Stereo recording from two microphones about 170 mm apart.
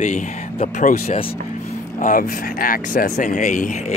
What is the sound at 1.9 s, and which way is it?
Speech, 55° left (ahead or behind).